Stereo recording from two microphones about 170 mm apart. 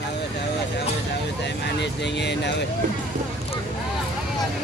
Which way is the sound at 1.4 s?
90° left.